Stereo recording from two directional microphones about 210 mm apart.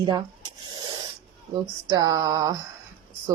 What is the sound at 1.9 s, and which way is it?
Speech, 15° right (ahead or behind).